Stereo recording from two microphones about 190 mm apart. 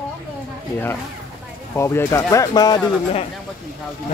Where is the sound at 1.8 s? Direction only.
15° left (ahead or behind).